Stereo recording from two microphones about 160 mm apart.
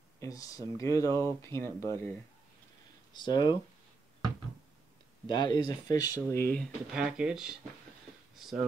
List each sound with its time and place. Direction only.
0.2 s speech: 20° left (ahead or behind)
3.2 s speech: 30° left (ahead or behind)
5.2 s speech: 30° left (ahead or behind); by 6.7 s 10° left (ahead or behind)
6.9 s speech: 5° right (ahead or behind)